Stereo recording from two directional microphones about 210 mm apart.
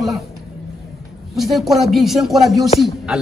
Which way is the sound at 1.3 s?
Centre (ahead or behind).